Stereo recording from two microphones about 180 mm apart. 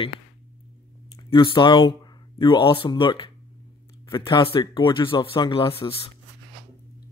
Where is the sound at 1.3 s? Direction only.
30° left (ahead or behind).